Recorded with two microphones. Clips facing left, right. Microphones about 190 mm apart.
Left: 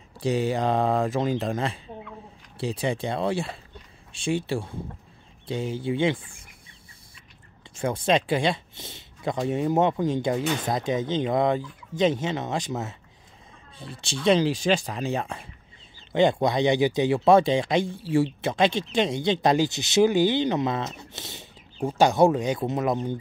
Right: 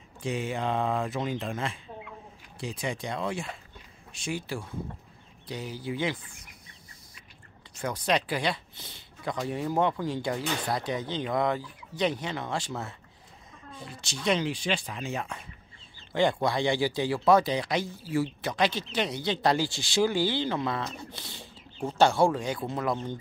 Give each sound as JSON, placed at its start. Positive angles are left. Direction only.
{"t": 0.2, "sound": "speech", "side_deg": 35}
{"t": 7.8, "sound": "speech", "side_deg": 25}
{"t": 13.7, "sound": "speech", "side_deg": 30}
{"t": 16.1, "sound": "speech", "side_deg": 20}